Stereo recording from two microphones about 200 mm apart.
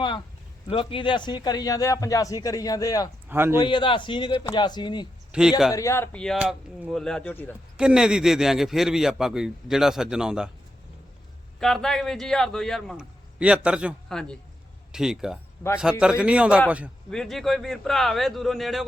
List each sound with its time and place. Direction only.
0.7 s a man's voice: 25° left (ahead or behind)
3.2 s speech: 10° right (ahead or behind)
3.6 s speech: 25° left (ahead or behind)
5.3 s a man's voice: 5° right (ahead or behind)
5.7 s a man's voice: 15° left (ahead or behind)
7.8 s a man's voice: 5° right (ahead or behind)
11.6 s a man's voice: centre (ahead or behind)